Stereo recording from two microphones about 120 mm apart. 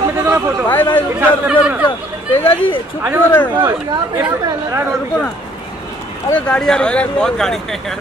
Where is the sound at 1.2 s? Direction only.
15° right (ahead or behind).